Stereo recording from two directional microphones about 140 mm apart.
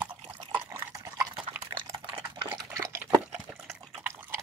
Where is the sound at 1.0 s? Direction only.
25° right (ahead or behind).